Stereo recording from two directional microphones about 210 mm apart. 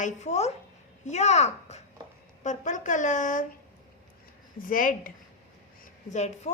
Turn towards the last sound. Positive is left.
turn(degrees=35)  # may be behind; listen again after turning